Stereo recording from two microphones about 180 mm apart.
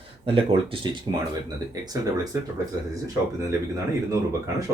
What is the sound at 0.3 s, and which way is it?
Speech, 30° right (ahead or behind).